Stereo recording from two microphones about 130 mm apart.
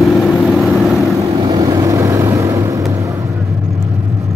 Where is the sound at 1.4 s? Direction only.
30° right (ahead or behind).